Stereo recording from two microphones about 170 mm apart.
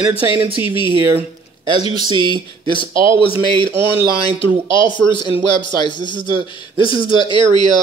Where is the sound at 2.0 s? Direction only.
25° right (ahead or behind).